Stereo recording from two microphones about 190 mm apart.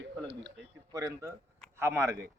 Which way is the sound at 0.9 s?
15° right (ahead or behind).